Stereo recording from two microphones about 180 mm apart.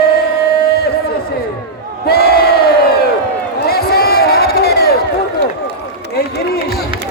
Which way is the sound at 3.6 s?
60° left (ahead or behind).